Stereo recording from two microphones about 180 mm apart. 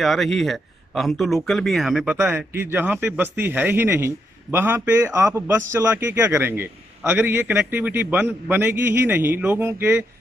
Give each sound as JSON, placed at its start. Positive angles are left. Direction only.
{"t": 0.0, "sound": "a man's voice", "side_deg": 0}